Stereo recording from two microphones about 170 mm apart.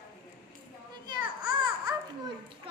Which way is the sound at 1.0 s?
25° right (ahead or behind).